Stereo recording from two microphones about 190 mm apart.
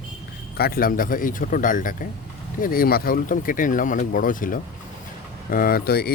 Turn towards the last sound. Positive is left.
turn(degrees=55)  # may be behind; listen again after turning